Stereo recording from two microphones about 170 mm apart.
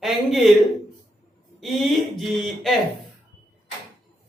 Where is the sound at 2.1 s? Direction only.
Centre (ahead or behind).